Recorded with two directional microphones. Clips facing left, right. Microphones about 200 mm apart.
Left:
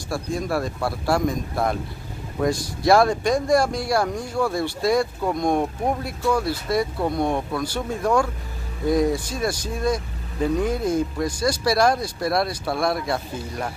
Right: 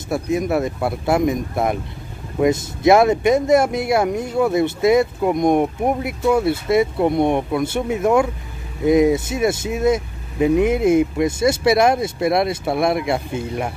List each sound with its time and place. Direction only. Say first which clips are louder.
0.1 s speech: right 6 dB; 20° right (ahead or behind)